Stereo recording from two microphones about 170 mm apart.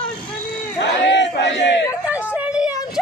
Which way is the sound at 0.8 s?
90° left.